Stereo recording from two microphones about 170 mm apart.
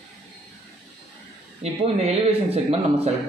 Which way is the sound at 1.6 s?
35° right (ahead or behind).